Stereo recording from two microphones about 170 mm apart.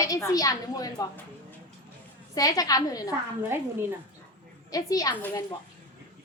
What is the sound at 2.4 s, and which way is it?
Speech, 20° left (ahead or behind).